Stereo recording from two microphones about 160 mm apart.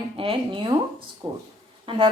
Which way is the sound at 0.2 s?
30° right (ahead or behind).